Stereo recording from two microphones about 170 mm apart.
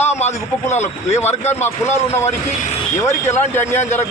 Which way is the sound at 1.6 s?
15° left (ahead or behind).